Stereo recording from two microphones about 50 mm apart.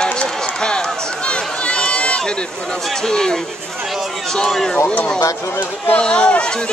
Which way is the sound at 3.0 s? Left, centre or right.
Centre.